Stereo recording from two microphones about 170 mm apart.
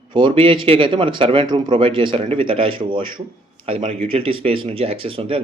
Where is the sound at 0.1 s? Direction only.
30° right (ahead or behind).